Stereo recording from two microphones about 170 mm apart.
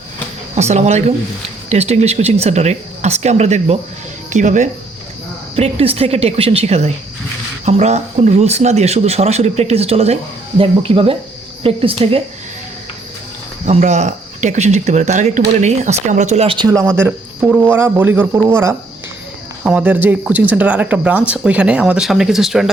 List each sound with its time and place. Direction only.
0.5 s speech: 45° right (ahead or behind)
13.7 s speech: 40° right (ahead or behind); by 16.9 s 20° right (ahead or behind)
17.0 s speech: 10° right (ahead or behind)